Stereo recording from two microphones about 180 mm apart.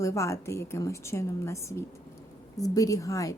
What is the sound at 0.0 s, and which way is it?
A woman's voice, 15° left (ahead or behind).